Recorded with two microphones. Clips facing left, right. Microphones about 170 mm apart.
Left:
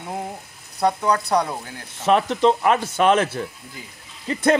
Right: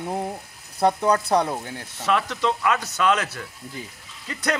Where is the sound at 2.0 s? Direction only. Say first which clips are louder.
Left 6 dB; 25° left (ahead or behind).